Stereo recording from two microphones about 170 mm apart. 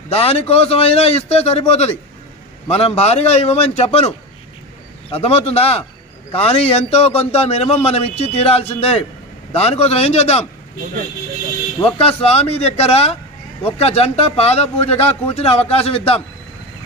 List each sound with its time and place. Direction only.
0.1 s a man's voice: 35° left (ahead or behind)
5.1 s a man's voice: 40° left (ahead or behind)
11.8 s a man's voice: 35° left (ahead or behind)